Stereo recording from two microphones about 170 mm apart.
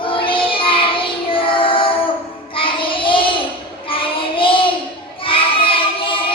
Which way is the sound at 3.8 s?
30° left (ahead or behind).